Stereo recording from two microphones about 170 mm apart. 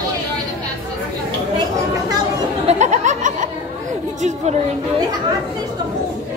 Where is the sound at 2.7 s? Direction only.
45° right (ahead or behind).